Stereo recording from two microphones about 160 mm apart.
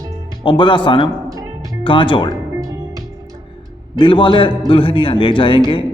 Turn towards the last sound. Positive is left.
turn(degrees=35)  # may be behind; listen again after turning